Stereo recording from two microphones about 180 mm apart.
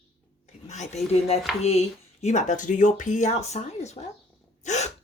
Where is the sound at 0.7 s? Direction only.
40° left (ahead or behind).